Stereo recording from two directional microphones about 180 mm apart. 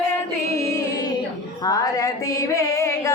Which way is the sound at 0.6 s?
15° left (ahead or behind).